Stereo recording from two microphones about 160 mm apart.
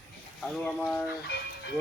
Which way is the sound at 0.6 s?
5° left (ahead or behind).